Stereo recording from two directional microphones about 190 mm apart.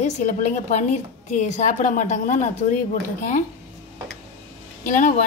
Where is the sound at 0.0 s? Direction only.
40° left (ahead or behind).